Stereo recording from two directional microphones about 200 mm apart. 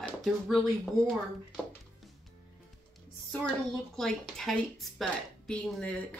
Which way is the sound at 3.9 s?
Centre (ahead or behind).